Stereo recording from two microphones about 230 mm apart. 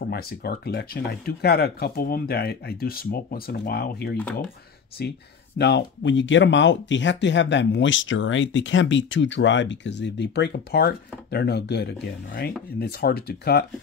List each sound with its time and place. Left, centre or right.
0.0 s speech: left